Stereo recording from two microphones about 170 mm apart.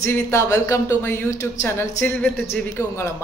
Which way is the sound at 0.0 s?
15° left (ahead or behind).